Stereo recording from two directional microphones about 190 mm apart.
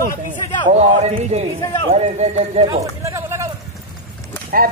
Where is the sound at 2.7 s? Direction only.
15° right (ahead or behind).